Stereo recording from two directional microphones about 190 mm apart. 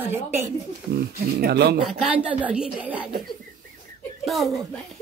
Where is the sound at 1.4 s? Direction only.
60° right (ahead or behind).